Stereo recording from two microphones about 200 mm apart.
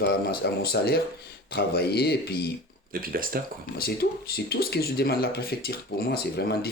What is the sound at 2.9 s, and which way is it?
Speech, 45° right (ahead or behind).